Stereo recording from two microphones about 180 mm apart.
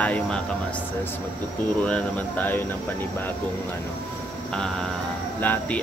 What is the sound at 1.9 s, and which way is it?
Speech, 10° left (ahead or behind).